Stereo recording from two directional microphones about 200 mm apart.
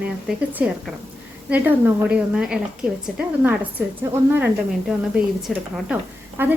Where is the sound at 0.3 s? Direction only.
5° right (ahead or behind).